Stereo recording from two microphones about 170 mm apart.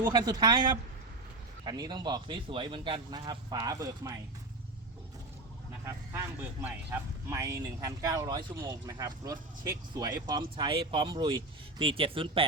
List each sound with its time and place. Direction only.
0.1 s speech: 25° right (ahead or behind)
5.8 s speech: 15° right (ahead or behind); by 12.5 s 30° right (ahead or behind)